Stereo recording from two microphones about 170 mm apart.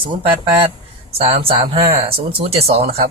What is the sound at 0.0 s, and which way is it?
A man's voice, 30° right (ahead or behind).